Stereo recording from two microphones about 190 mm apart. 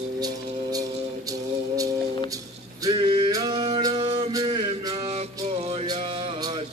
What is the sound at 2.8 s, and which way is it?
Male singing, 20° right (ahead or behind).